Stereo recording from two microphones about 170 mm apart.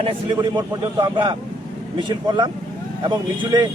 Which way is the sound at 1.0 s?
25° right (ahead or behind).